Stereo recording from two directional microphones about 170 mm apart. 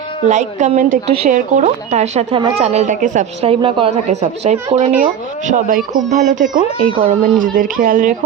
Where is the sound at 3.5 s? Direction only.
30° right (ahead or behind).